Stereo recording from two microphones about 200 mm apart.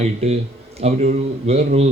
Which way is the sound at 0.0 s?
35° right (ahead or behind).